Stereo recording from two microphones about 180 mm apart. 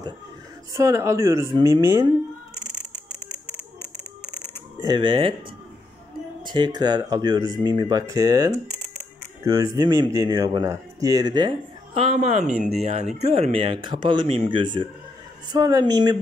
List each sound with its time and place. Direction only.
0.7 s speech: 15° right (ahead or behind)
2.5 s a sound: 30° left (ahead or behind)
4.8 s speech: 25° right (ahead or behind)
6.4 s speech: 25° right (ahead or behind)